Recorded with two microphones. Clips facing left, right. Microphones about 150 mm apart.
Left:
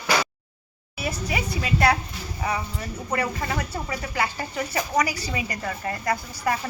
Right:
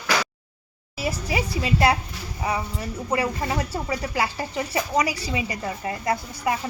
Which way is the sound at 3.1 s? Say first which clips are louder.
Right 2 dB; 25° right (ahead or behind).